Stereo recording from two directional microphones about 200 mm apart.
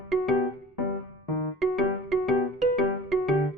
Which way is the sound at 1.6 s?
Centre (ahead or behind).